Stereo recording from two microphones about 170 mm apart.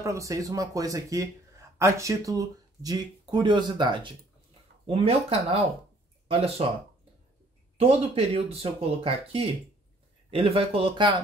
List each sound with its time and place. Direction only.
0.0 s speech: 20° right (ahead or behind)
7.7 s speech: 35° right (ahead or behind)